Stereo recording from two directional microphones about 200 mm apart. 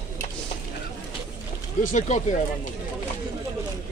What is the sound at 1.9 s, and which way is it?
Speech, 40° left (ahead or behind).